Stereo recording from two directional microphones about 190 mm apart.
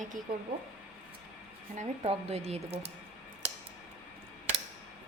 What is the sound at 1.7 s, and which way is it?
A woman's voice, 35° right (ahead or behind).